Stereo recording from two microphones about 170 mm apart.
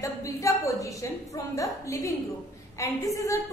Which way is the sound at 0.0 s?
20° left (ahead or behind).